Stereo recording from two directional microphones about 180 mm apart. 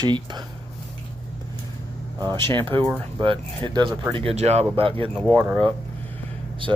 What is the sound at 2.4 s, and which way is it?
Speech, 30° right (ahead or behind).